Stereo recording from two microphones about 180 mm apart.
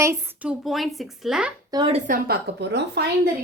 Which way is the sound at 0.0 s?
15° right (ahead or behind).